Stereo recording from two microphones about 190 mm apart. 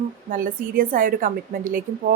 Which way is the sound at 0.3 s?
45° right (ahead or behind).